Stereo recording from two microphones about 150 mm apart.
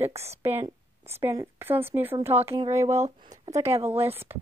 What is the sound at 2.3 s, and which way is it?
Speech, 40° right (ahead or behind).